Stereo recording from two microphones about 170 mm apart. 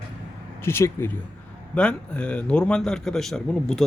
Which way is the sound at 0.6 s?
15° left (ahead or behind).